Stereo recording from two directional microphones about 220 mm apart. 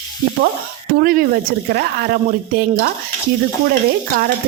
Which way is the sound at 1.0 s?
40° right (ahead or behind).